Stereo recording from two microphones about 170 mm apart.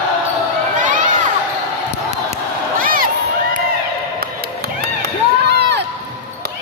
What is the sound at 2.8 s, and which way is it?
Crowd, 55° right (ahead or behind).